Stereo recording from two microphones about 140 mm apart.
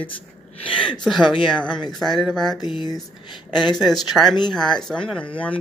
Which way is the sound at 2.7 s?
35° left (ahead or behind).